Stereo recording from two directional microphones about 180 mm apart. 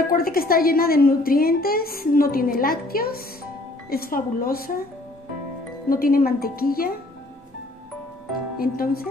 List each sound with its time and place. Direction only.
0.1 s a woman's voice: 55° left (ahead or behind)
5.9 s a woman's voice: 55° left (ahead or behind)
8.5 s speech: 55° left (ahead or behind)